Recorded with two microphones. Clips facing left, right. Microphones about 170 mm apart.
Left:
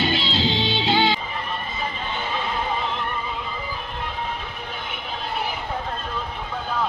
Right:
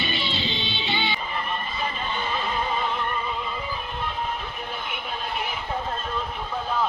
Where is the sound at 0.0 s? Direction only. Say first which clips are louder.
Left 6 dB; 90° left.